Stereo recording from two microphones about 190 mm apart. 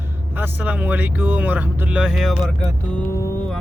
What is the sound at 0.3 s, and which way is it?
Speech, 10° right (ahead or behind).